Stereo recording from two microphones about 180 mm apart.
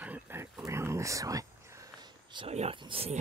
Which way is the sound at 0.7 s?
15° right (ahead or behind).